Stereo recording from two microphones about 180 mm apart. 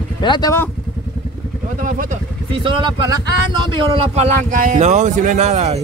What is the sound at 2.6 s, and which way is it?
Speech, 25° right (ahead or behind).